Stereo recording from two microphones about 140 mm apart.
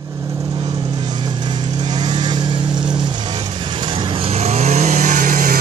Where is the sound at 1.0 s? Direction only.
30° right (ahead or behind).